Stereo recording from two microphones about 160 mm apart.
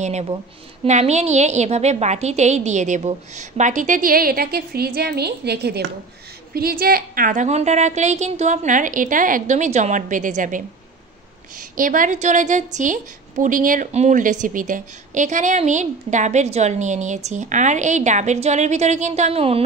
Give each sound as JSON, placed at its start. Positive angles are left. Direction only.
{"t": 0.0, "sound": "a woman's voice", "side_deg": -45}
{"t": 6.5, "sound": "a woman's voice", "side_deg": -70}